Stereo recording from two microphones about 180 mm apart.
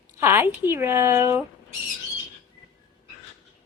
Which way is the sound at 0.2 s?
15° right (ahead or behind).